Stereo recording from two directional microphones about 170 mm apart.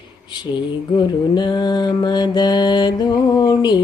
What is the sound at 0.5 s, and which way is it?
Mantra, 25° left (ahead or behind).